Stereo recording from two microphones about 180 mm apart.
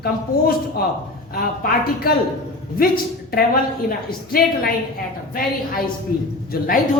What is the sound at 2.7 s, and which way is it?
A woman's voice, 55° left (ahead or behind).